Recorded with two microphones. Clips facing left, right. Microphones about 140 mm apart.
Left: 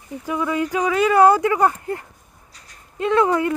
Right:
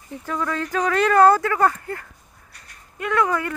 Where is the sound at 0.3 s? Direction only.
10° left (ahead or behind).